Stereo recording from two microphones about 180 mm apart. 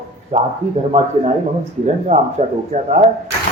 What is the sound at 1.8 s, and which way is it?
A man's voice, 40° right (ahead or behind).